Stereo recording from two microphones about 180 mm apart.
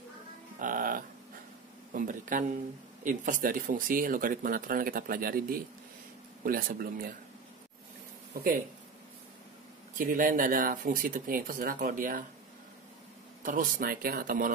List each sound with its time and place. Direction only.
0.6 s sheep: 50° right (ahead or behind)
2.0 s speech: 45° right (ahead or behind)
9.9 s speech: 50° right (ahead or behind)
13.4 s speech: 50° right (ahead or behind)